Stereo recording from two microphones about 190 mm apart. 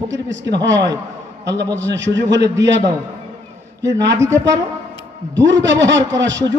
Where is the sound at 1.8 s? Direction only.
70° right (ahead or behind).